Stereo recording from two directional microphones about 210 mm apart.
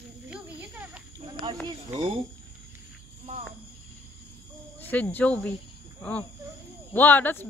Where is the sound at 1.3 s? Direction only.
20° right (ahead or behind).